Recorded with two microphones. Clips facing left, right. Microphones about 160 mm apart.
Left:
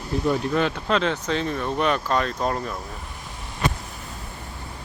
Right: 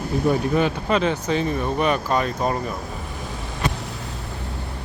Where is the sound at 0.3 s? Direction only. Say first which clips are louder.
Right 2 dB; 5° right (ahead or behind).